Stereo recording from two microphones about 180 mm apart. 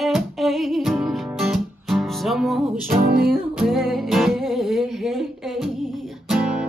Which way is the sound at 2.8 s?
60° right (ahead or behind).